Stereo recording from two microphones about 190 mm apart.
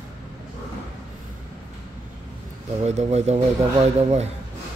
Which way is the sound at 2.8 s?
35° right (ahead or behind).